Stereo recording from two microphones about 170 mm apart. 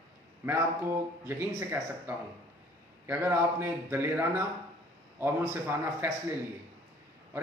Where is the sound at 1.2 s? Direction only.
15° right (ahead or behind).